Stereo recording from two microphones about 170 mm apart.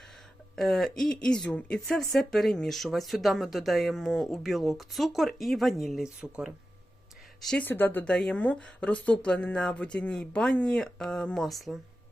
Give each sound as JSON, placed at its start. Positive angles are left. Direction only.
{"t": 0.5, "sound": "speech", "side_deg": 0}
{"t": 7.4, "sound": "speech", "side_deg": 10}